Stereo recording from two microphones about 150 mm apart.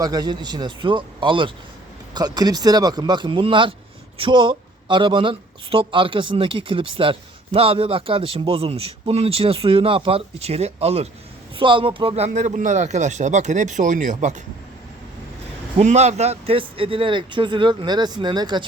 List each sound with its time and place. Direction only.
0.0 s a man's voice: 25° right (ahead or behind); by 14.4 s 55° right (ahead or behind)
15.8 s speech: 50° right (ahead or behind); by 18.6 s 30° right (ahead or behind)